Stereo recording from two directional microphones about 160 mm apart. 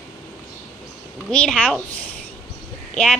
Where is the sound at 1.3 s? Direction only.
5° left (ahead or behind).